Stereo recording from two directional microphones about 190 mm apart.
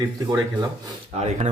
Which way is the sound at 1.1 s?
35° right (ahead or behind).